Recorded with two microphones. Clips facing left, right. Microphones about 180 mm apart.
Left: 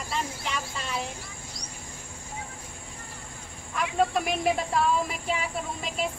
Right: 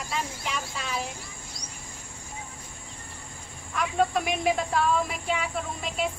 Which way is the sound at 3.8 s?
Centre (ahead or behind).